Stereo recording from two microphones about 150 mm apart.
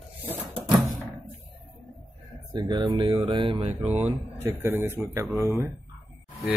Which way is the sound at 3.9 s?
45° right (ahead or behind).